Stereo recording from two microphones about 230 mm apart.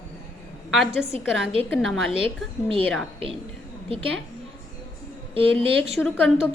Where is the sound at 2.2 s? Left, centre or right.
Right.